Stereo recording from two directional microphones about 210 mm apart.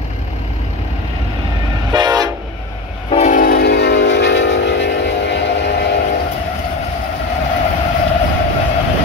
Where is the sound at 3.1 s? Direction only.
35° left (ahead or behind); by 5.7 s 55° left (ahead or behind).